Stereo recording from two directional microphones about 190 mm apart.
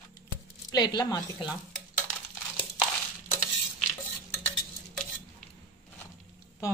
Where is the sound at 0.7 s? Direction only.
20° left (ahead or behind).